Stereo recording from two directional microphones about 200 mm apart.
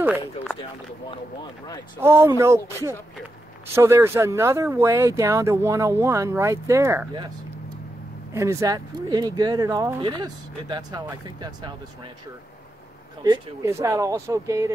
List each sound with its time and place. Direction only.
0.0 s speech: 5° right (ahead or behind)
2.0 s speech: 15° right (ahead or behind)
8.3 s speech: 15° right (ahead or behind)
13.2 s speech: 15° right (ahead or behind)